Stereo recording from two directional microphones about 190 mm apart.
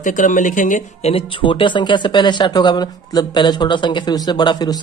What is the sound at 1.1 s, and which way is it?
Speech, 25° left (ahead or behind).